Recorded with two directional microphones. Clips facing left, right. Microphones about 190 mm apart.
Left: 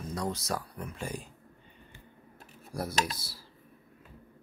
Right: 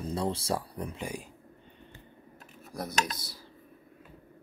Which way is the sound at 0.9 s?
15° right (ahead or behind).